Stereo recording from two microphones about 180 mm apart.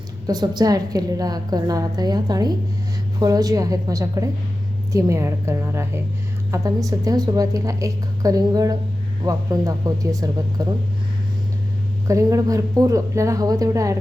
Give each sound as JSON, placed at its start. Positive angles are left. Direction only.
{"t": 0.3, "sound": "a woman's voice", "side_deg": -20}
{"t": 12.0, "sound": "a woman's voice", "side_deg": -15}